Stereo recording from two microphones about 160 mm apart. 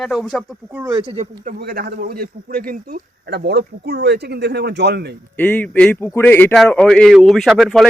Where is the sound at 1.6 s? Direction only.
75° right (ahead or behind); by 5.1 s 90° right.